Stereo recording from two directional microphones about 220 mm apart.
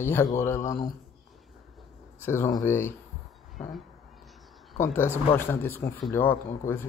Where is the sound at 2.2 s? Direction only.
10° left (ahead or behind).